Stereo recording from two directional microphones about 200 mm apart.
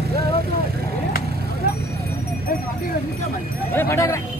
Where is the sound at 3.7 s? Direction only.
15° left (ahead or behind).